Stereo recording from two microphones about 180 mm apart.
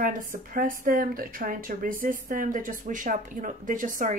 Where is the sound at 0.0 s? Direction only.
50° right (ahead or behind).